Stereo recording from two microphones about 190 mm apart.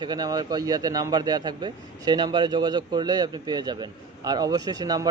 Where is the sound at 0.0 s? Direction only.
20° right (ahead or behind).